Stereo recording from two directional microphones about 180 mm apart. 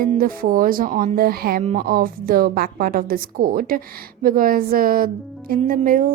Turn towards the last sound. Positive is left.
turn(degrees=-50)  # may be behind; listen again after turning